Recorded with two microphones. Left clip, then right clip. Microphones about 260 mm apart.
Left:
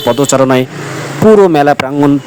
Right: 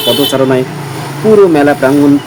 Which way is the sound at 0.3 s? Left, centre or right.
Left.